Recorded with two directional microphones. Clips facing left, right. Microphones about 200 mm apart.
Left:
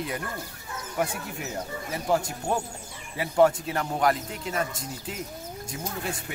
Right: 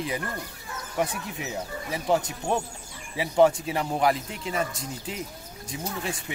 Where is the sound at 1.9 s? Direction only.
Centre (ahead or behind).